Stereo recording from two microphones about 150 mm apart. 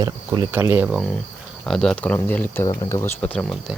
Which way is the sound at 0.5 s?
15° right (ahead or behind).